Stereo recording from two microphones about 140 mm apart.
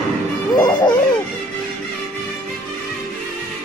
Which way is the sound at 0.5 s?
30° left (ahead or behind).